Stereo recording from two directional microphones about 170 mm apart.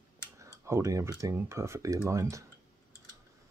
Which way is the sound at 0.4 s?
15° right (ahead or behind).